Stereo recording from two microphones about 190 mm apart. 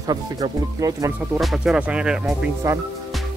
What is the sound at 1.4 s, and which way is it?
Speech, centre (ahead or behind).